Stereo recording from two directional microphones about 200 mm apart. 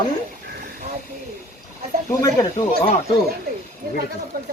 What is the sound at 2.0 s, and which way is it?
Speech, 15° left (ahead or behind).